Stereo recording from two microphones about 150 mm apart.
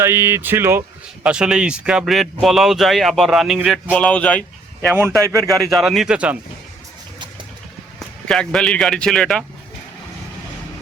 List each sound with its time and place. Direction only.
0.0 s speech: 15° right (ahead or behind)
1.2 s speech: 5° right (ahead or behind)
5.2 s speech: 20° right (ahead or behind)
5.7 s speech: centre (ahead or behind)
7.9 s speech: 5° left (ahead or behind)